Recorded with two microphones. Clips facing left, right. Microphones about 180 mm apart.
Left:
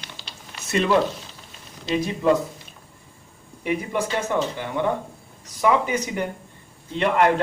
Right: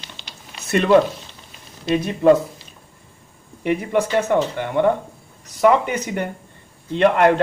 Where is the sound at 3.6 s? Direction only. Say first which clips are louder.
Right 5 dB; 60° right (ahead or behind).